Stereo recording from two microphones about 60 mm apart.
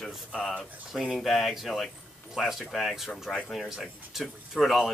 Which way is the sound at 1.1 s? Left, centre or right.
Centre.